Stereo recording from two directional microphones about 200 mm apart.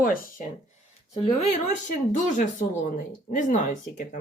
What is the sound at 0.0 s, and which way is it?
Speech, 45° left (ahead or behind).